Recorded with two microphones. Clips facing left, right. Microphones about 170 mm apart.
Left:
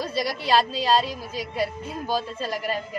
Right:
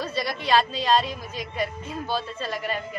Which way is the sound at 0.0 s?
10° left (ahead or behind).